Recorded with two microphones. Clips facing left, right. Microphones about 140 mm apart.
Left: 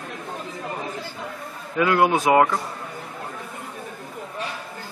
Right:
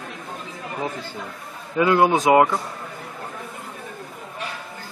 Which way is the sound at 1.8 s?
25° right (ahead or behind).